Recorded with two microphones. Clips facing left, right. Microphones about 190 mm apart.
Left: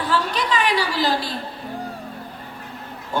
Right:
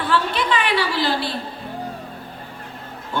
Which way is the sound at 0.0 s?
40° left (ahead or behind).